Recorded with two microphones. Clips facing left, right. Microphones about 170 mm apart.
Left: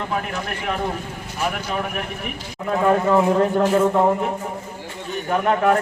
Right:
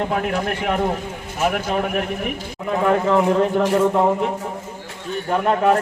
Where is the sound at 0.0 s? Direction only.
50° right (ahead or behind).